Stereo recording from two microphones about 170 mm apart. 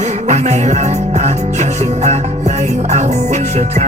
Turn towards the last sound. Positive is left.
turn(degrees=-40)  # may be behind; listen again after turning